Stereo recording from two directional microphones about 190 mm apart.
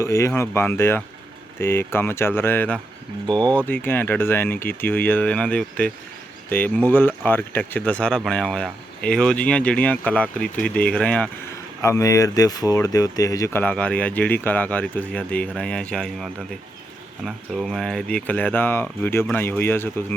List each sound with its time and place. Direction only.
0.0 s speech: 15° left (ahead or behind)
3.2 s speech: 25° right (ahead or behind)
3.7 s speech: 10° left (ahead or behind)